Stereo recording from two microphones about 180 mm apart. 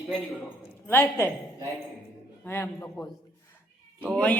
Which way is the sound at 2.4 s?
15° left (ahead or behind).